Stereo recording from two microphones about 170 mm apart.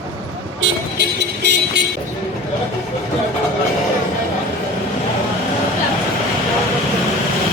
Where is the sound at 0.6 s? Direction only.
90° right.